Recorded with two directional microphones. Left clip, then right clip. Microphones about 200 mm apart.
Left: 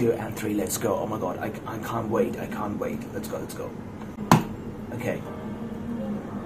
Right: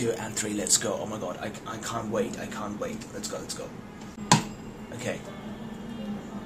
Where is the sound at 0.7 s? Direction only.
Centre (ahead or behind).